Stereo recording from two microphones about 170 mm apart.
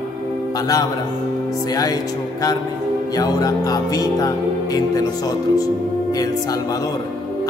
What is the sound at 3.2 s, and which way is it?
Music, 20° left (ahead or behind).